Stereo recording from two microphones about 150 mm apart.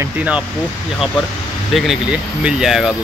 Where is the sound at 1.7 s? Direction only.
Centre (ahead or behind).